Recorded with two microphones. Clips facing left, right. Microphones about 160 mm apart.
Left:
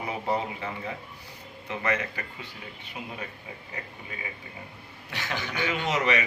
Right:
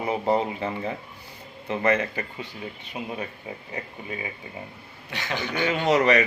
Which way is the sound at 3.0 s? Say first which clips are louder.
Right 6 dB; 20° right (ahead or behind).